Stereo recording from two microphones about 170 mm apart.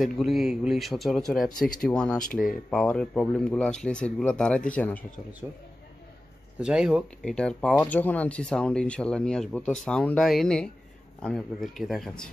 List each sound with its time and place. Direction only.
0.0 s speech: centre (ahead or behind)
6.6 s speech: 5° right (ahead or behind)